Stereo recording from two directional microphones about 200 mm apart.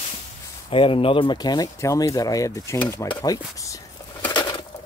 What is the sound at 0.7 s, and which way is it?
Speech, 25° left (ahead or behind).